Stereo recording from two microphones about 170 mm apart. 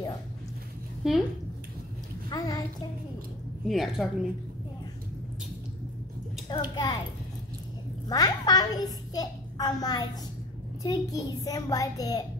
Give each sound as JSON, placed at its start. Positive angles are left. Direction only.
{"t": 1.0, "sound": "a woman's voice", "side_deg": -5}
{"t": 2.2, "sound": "a sound", "side_deg": 25}
{"t": 3.6, "sound": "a woman's voice", "side_deg": 0}
{"t": 6.5, "sound": "a child's voice", "side_deg": 25}
{"t": 8.1, "sound": "a child's voice", "side_deg": 25}